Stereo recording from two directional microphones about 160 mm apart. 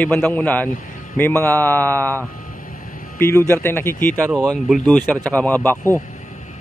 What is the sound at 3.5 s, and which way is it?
Speech, 15° left (ahead or behind).